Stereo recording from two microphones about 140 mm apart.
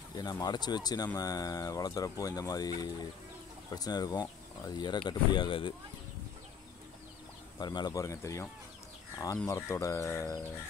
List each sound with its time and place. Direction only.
0.1 s speech: 30° left (ahead or behind)
7.5 s speech: 30° left (ahead or behind)
9.5 s speech: 20° left (ahead or behind)